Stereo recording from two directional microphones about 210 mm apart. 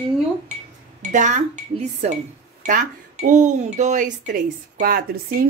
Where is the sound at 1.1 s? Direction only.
35° right (ahead or behind).